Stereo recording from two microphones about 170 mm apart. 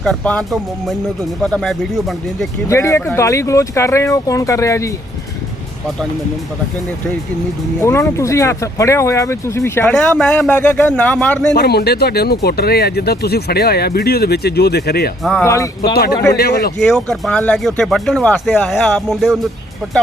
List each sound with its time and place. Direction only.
0.0 s speech: 5° left (ahead or behind)
2.6 s speech: 15° left (ahead or behind)
7.8 s speech: 15° left (ahead or behind)
11.5 s speech: 70° left (ahead or behind)
15.2 s speech: centre (ahead or behind)
15.4 s speech: 20° left (ahead or behind)
16.3 s speech: 65° left (ahead or behind)
16.8 s speech: 5° left (ahead or behind)